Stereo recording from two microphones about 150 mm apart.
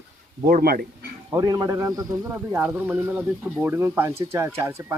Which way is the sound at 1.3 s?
25° right (ahead or behind).